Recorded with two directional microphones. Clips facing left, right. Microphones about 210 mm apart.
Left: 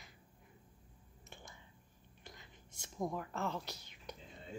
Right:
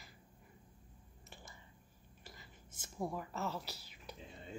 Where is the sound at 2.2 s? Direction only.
5° right (ahead or behind).